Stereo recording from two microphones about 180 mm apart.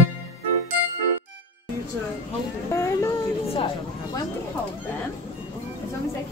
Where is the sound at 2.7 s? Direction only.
15° left (ahead or behind).